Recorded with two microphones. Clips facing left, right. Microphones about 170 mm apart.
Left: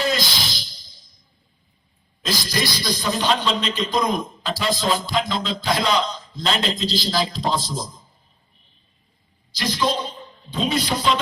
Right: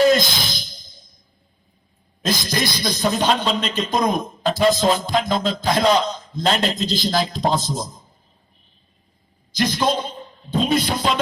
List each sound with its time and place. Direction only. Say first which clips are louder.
0.0 s music: right 8 dB; 50° right (ahead or behind)
2.2 s a man's voice: right 2 dB; 50° right (ahead or behind)
9.6 s a sound: right 3 dB; 50° right (ahead or behind)